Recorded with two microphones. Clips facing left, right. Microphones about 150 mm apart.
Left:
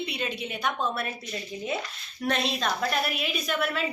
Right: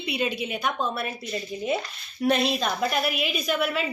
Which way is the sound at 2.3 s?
5° right (ahead or behind).